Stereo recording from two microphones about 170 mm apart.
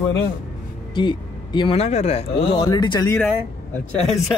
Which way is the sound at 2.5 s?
25° left (ahead or behind).